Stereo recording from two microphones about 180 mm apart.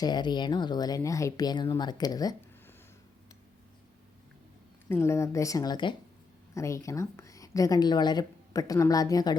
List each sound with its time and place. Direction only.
0.0 s a woman's voice: 25° left (ahead or behind)
4.9 s a woman's voice: 15° left (ahead or behind)